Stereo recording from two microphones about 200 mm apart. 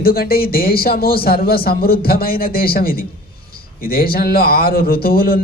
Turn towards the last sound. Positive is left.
turn(degrees=50)  # may be behind; listen again after turning